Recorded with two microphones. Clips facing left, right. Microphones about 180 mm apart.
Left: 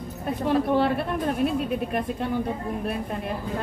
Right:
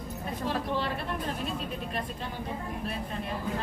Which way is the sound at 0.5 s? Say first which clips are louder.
Left 10 dB; 55° left (ahead or behind).